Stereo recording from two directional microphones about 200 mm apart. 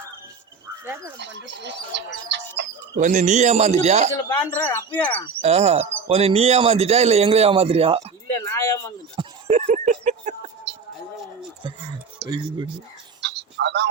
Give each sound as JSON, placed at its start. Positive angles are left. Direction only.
{"t": 1.2, "sound": "speech", "side_deg": -65}
{"t": 3.0, "sound": "speech", "side_deg": -40}
{"t": 4.1, "sound": "speech", "side_deg": 15}
{"t": 5.4, "sound": "speech", "side_deg": -30}
{"t": 8.4, "sound": "a sound", "side_deg": 15}
{"t": 9.1, "sound": "a sound", "side_deg": -35}
{"t": 11.6, "sound": "speech", "side_deg": -25}
{"t": 13.2, "sound": "telephone", "side_deg": -60}